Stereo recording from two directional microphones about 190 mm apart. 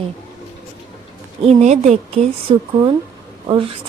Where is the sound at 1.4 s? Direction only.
35° right (ahead or behind).